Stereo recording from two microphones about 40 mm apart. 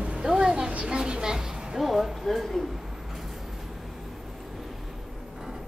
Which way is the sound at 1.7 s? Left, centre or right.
Centre.